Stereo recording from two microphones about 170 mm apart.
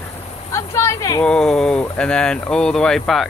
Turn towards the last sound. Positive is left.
turn(degrees=0)  # may be behind; listen again after turning